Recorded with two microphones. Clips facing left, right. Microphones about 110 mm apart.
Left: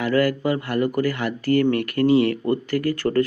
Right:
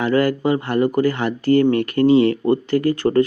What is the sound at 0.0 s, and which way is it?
Speech, 25° right (ahead or behind).